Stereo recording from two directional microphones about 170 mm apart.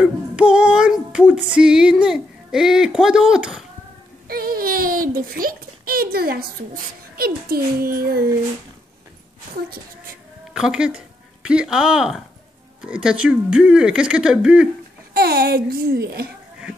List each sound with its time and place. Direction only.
0.0 s female singing: 5° right (ahead or behind)
4.3 s a child's voice: 60° right (ahead or behind)
10.5 s speech: 5° right (ahead or behind)
15.1 s a child's voice: 65° right (ahead or behind)